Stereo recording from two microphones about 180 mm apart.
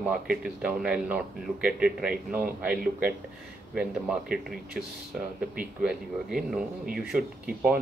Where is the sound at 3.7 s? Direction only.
5° right (ahead or behind).